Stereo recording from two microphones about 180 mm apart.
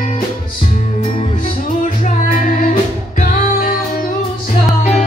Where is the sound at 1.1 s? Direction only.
30° left (ahead or behind).